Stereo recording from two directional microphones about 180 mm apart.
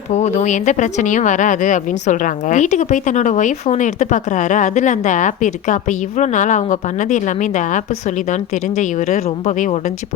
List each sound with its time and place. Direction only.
0.1 s speech: 40° left (ahead or behind)